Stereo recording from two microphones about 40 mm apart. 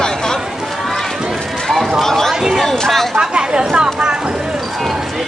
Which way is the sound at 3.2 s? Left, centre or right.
Right.